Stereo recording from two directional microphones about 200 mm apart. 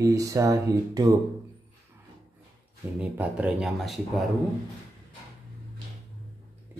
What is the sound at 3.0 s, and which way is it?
Speech, 5° right (ahead or behind).